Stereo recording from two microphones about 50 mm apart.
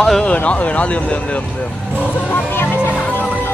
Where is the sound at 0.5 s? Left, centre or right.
Left.